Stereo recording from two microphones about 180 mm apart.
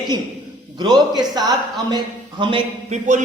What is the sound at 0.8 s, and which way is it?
A man's voice, 25° right (ahead or behind).